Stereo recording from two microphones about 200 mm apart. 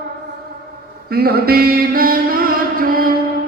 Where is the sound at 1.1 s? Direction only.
50° right (ahead or behind).